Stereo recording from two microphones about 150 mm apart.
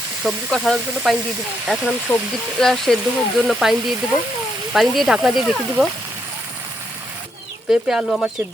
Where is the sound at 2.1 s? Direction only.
20° left (ahead or behind).